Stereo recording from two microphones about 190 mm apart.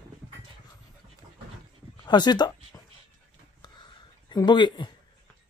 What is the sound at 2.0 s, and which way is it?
Speech, 20° left (ahead or behind).